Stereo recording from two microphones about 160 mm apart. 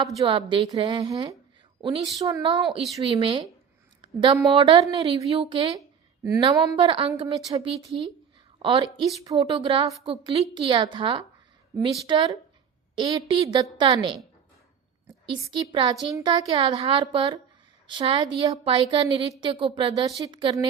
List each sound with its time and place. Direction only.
0.3 s a woman's voice: 30° right (ahead or behind)
1.8 s a woman's voice: 40° right (ahead or behind)
6.5 s a woman's voice: 20° right (ahead or behind)
6.7 s a woman's voice: 35° right (ahead or behind)
15.5 s a woman's voice: 30° right (ahead or behind)